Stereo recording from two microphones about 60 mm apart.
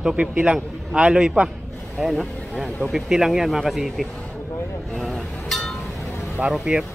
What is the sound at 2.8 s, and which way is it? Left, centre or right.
Speech, centre.